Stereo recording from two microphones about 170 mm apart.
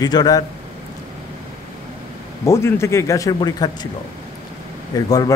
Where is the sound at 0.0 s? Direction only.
25° left (ahead or behind).